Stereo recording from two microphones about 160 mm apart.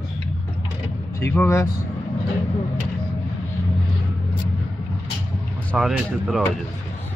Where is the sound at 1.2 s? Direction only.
15° left (ahead or behind).